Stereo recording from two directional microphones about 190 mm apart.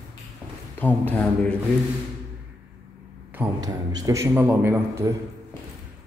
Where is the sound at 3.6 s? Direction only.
20° right (ahead or behind).